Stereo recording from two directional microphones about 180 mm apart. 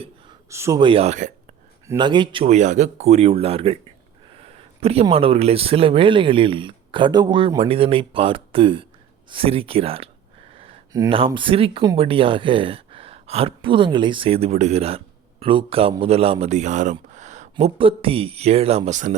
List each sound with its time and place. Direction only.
0.5 s speech: 15° right (ahead or behind)
0.8 s speech: 30° right (ahead or behind)
1.9 s speech: 25° right (ahead or behind)
4.4 s a sound: 35° right (ahead or behind)
5.1 s speech: 35° right (ahead or behind)
10.5 s a sound: 30° right (ahead or behind)
11.3 s speech: 30° right (ahead or behind)